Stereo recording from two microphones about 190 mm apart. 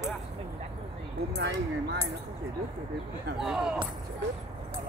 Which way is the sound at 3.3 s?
5° right (ahead or behind).